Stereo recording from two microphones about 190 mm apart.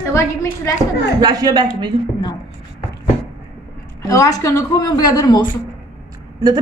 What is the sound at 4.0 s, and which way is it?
Speech, 15° left (ahead or behind).